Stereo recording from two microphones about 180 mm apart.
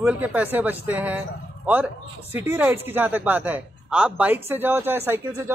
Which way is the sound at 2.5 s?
10° right (ahead or behind).